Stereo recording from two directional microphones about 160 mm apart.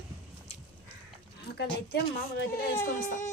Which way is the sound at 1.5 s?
90° left.